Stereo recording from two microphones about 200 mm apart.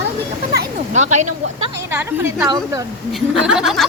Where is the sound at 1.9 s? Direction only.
10° right (ahead or behind).